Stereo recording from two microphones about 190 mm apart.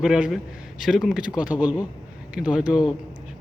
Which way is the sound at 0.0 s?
5° right (ahead or behind).